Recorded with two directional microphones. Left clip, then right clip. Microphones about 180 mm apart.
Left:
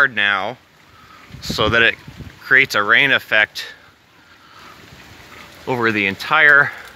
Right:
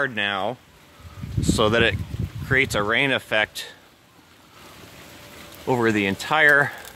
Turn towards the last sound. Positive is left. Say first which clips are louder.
# left 5 dB
turn(degrees=-15)  # may be behind; listen again after turning